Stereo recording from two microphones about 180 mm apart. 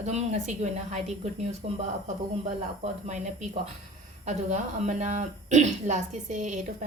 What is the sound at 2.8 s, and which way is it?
Speech, 40° right (ahead or behind).